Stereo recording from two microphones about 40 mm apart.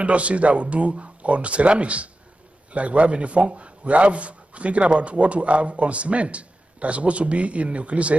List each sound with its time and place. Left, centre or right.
0.0 s speech: right